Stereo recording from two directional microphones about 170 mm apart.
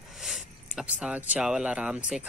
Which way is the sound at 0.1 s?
Centre (ahead or behind).